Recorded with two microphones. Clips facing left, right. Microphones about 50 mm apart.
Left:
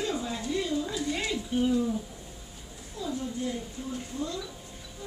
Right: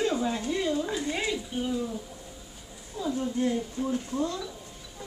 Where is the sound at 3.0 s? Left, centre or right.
Right.